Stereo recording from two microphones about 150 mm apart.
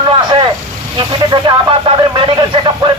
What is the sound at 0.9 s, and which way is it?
A man's voice, 30° right (ahead or behind).